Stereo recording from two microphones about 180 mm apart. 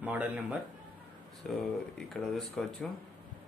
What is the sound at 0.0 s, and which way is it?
Speech, 10° right (ahead or behind).